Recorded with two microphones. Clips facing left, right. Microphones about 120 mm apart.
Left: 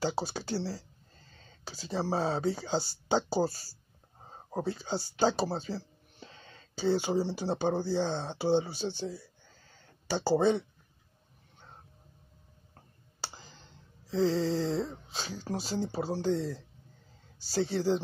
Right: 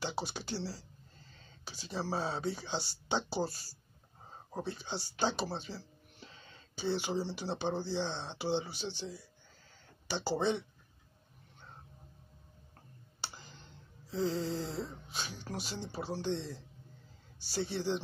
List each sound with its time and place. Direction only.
0.0 s speech: 35° left (ahead or behind); by 9.2 s 50° left (ahead or behind)
10.0 s speech: 40° left (ahead or behind)
14.0 s a sound: 90° left
15.4 s speech: 35° left (ahead or behind)